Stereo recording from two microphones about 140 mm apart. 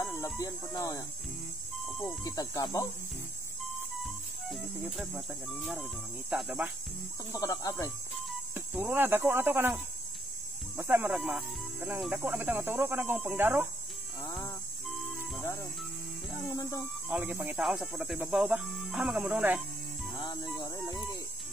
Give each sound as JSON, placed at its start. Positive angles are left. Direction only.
{"t": 0.0, "sound": "speech", "side_deg": 25}
{"t": 1.9, "sound": "a sound", "side_deg": 5}
{"t": 2.2, "sound": "speech", "side_deg": 25}
{"t": 4.0, "sound": "music", "side_deg": 0}
{"t": 5.1, "sound": "speech", "side_deg": -5}
{"t": 7.3, "sound": "speech", "side_deg": 25}
{"t": 8.7, "sound": "speech", "side_deg": -15}
{"t": 10.8, "sound": "speech", "side_deg": -15}
{"t": 11.1, "sound": "speech", "side_deg": -5}
{"t": 12.3, "sound": "speech", "side_deg": -10}
{"t": 16.3, "sound": "speech", "side_deg": 25}
{"t": 17.1, "sound": "speech", "side_deg": -5}
{"t": 20.2, "sound": "music", "side_deg": 30}
{"t": 20.6, "sound": "a sound", "side_deg": 25}